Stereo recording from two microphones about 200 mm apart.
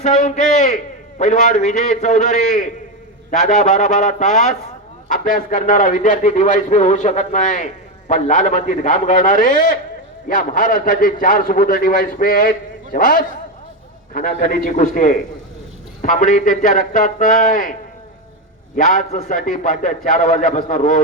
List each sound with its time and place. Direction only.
0.0 s a man's voice: 35° left (ahead or behind)
18.8 s a man's voice: 40° left (ahead or behind)